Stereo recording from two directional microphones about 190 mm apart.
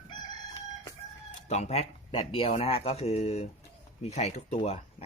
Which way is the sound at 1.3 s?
35° left (ahead or behind).